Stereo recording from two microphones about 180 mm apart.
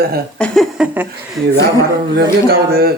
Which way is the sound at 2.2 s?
60° right (ahead or behind).